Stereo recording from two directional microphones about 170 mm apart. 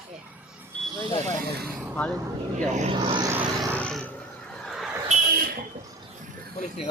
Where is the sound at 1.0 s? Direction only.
15° left (ahead or behind).